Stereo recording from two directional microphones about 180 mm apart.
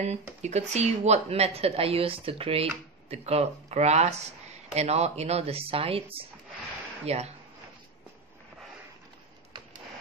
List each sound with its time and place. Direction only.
0.0 s speech: 40° right (ahead or behind)